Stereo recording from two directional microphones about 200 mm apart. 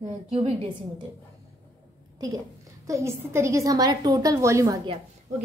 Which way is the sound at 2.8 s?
15° right (ahead or behind).